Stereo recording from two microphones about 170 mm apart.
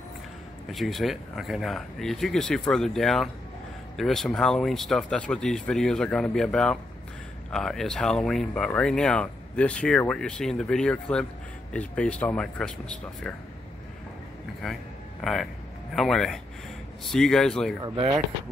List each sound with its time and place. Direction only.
0.7 s speech: centre (ahead or behind)
15.9 s speech: centre (ahead or behind)
17.8 s speech: 25° right (ahead or behind)